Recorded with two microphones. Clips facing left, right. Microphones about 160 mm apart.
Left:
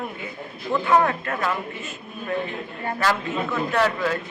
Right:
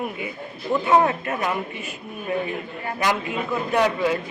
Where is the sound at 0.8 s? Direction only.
20° right (ahead or behind).